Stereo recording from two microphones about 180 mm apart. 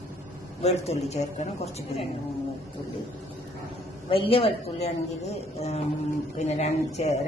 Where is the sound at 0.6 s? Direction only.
35° left (ahead or behind).